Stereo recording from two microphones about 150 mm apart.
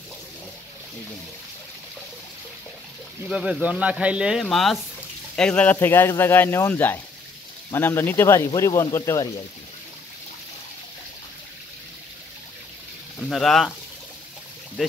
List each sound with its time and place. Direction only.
3.3 s speech: 5° right (ahead or behind); by 9.3 s 20° left (ahead or behind)
13.2 s speech: centre (ahead or behind)